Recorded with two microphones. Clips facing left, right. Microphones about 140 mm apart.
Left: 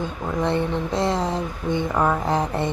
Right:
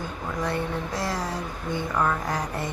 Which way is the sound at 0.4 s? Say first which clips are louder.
Left 6 dB; 25° left (ahead or behind).